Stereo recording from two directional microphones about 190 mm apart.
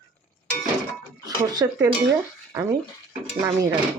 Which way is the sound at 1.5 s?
20° right (ahead or behind).